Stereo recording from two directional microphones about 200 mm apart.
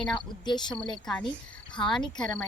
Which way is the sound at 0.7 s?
5° left (ahead or behind).